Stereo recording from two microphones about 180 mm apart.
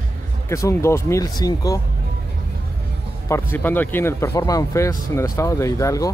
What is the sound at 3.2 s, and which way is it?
Speech, 10° left (ahead or behind).